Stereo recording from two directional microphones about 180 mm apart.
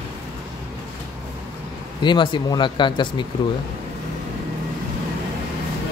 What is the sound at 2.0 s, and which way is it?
Speech, 25° left (ahead or behind).